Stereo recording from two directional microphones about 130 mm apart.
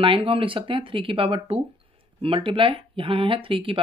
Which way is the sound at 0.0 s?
45° right (ahead or behind).